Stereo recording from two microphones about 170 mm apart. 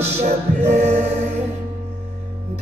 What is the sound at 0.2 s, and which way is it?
Choir, 40° right (ahead or behind).